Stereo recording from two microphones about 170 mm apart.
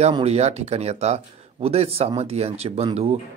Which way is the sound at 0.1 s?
40° right (ahead or behind).